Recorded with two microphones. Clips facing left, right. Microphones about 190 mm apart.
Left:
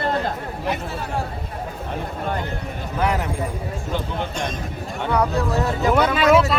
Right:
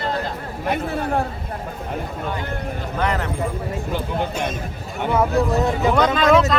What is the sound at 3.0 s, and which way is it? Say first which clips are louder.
Speech: left 1 dB; 10° left (ahead or behind).